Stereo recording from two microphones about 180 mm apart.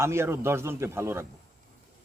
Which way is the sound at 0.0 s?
15° right (ahead or behind).